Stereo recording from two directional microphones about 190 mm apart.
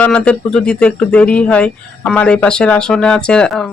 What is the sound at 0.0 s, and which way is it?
Speech, 5° left (ahead or behind).